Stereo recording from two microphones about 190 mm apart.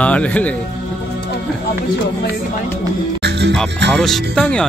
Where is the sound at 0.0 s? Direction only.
5° left (ahead or behind).